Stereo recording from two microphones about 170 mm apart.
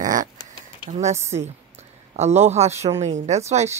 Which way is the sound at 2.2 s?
40° right (ahead or behind).